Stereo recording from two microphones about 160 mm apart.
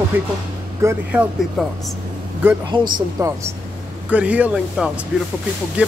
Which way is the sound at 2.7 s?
30° right (ahead or behind).